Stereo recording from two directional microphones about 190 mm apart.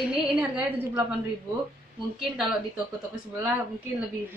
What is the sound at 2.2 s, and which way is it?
Speech, 5° right (ahead or behind).